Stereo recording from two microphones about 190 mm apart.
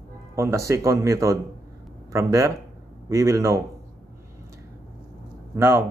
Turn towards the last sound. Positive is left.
turn(degrees=-15)  # may be behind; listen again after turning